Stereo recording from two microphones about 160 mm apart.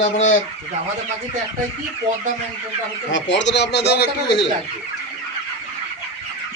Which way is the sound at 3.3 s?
90° left.